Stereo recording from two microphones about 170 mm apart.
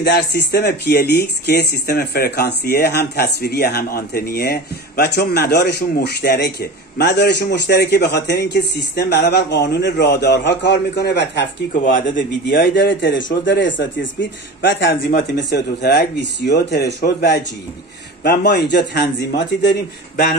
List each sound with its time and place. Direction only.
0.0 s speech: 70° left (ahead or behind)
11.8 s a man's voice: 55° left (ahead or behind)
12.5 s a man's voice: 90° left